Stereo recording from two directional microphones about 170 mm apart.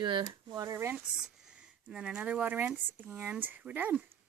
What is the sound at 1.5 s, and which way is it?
Speech, 5° right (ahead or behind).